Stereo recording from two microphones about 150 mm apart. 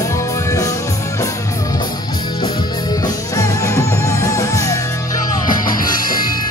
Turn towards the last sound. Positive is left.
turn(degrees=70)  # may be behind; listen again after turning